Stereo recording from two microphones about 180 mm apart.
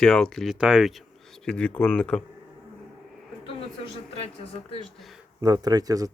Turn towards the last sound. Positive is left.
turn(degrees=-20)  # may be behind; listen again after turning